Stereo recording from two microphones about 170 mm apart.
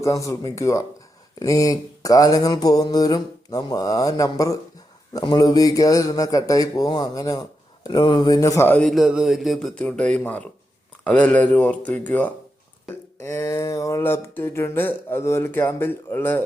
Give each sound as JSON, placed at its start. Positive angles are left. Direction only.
{"t": 0.0, "sound": "mantra", "side_deg": 20}
{"t": 8.9, "sound": "speech", "side_deg": 0}